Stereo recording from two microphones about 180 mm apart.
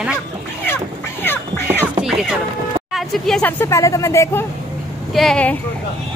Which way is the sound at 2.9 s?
Centre (ahead or behind).